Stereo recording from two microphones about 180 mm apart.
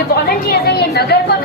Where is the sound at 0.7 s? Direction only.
65° left (ahead or behind).